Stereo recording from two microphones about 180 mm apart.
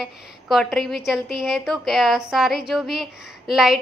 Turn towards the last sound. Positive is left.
turn(degrees=0)  # may be behind; listen again after turning